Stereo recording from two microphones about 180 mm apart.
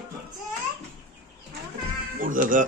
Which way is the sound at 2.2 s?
45° right (ahead or behind).